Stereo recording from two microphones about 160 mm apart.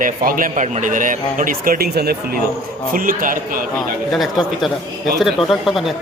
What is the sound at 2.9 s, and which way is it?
Speech, 60° right (ahead or behind).